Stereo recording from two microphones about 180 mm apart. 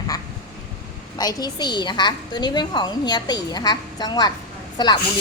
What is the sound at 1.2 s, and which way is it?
Speech, 20° left (ahead or behind).